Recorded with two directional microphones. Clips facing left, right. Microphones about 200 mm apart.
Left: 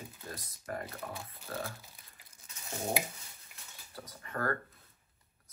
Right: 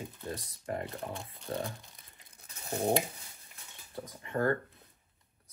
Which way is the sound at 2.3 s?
60° right (ahead or behind).